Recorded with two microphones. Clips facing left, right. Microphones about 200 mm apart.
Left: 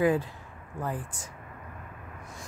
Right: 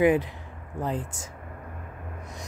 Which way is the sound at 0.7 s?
20° right (ahead or behind).